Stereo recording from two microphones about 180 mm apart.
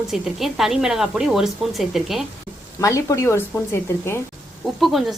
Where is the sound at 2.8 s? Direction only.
15° left (ahead or behind).